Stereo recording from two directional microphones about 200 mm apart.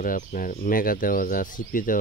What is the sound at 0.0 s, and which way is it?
Speech, 45° left (ahead or behind).